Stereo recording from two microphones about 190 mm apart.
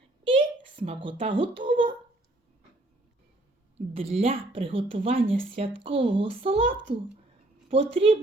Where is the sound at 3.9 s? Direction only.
30° right (ahead or behind).